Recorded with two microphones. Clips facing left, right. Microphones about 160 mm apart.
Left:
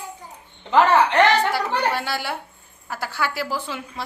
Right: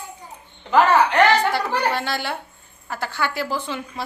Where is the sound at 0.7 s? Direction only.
25° left (ahead or behind).